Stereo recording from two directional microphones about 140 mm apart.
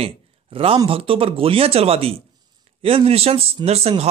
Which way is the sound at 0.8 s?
40° right (ahead or behind).